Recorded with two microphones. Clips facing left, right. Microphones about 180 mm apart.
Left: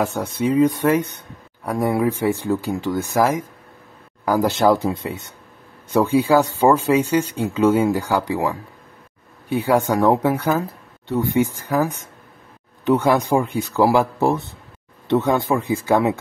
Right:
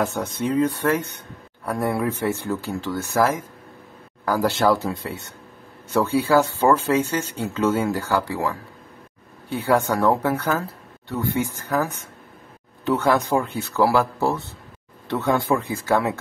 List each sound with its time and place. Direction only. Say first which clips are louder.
0.0 s speech: left 3 dB; 10° left (ahead or behind)